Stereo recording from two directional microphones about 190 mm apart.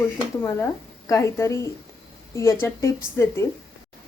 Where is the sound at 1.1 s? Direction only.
15° left (ahead or behind).